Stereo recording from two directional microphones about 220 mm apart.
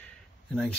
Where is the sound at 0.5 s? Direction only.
5° left (ahead or behind).